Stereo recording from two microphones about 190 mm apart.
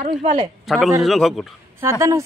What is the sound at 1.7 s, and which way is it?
Speech, 15° right (ahead or behind).